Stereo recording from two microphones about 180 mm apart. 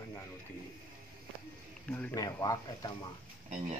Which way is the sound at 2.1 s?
20° left (ahead or behind).